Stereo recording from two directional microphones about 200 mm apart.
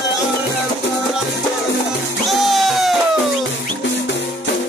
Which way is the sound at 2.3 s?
Centre (ahead or behind).